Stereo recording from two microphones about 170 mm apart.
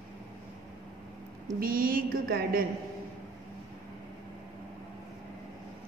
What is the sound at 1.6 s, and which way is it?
A woman's voice, 55° right (ahead or behind).